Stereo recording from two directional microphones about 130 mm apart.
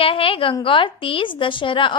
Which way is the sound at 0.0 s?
45° left (ahead or behind).